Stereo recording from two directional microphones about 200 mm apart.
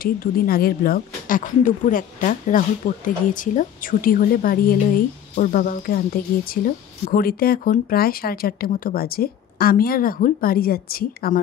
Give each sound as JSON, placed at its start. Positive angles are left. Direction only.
{"t": 0.0, "sound": "a woman's voice", "side_deg": 45}